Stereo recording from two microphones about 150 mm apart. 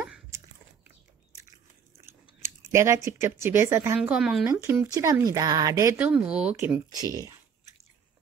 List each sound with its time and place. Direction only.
0.3 s biting: 20° right (ahead or behind)
2.4 s speech: 20° right (ahead or behind)
4.1 s speech: centre (ahead or behind)
4.5 s speech: 20° right (ahead or behind)
5.9 s speech: 10° right (ahead or behind)